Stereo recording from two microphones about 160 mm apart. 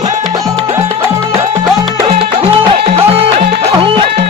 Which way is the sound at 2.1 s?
40° right (ahead or behind).